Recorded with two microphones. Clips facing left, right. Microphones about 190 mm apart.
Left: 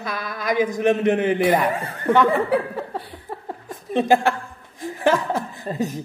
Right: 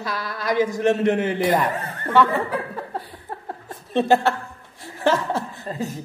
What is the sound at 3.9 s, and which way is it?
A man's voice, 15° left (ahead or behind).